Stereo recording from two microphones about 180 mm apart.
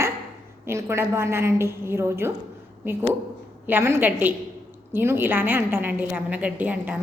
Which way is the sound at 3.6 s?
10° right (ahead or behind).